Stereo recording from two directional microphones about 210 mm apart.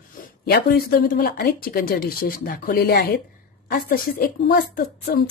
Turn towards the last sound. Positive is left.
turn(degrees=45)  # may be behind; listen again after turning